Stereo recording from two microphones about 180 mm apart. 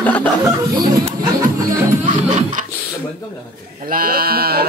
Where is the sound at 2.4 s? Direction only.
45° right (ahead or behind).